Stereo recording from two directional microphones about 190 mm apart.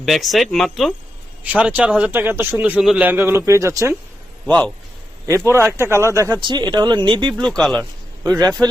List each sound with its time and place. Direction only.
0.0 s a man's voice: centre (ahead or behind)
4.4 s speech: 10° left (ahead or behind)
5.5 s speech: 15° right (ahead or behind)
7.3 s speech: 5° left (ahead or behind)
8.2 s speech: 20° right (ahead or behind)